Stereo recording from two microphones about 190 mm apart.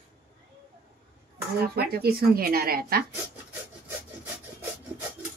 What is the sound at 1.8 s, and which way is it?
Speech, 55° right (ahead or behind).